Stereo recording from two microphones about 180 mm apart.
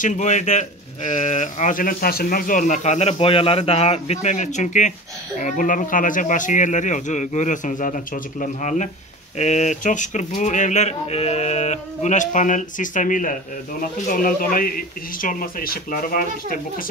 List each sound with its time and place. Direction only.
0.0 s speech: 40° left (ahead or behind)